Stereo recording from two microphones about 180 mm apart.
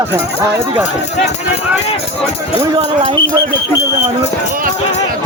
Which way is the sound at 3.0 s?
30° right (ahead or behind).